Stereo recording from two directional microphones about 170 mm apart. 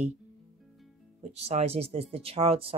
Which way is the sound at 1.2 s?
40° right (ahead or behind).